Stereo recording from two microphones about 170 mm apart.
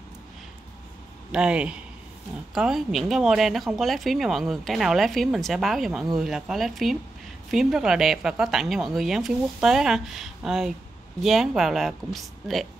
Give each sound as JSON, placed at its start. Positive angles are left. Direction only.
{"t": 1.3, "sound": "speech", "side_deg": -5}